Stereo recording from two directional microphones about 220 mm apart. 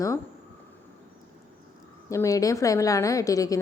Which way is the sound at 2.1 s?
15° left (ahead or behind).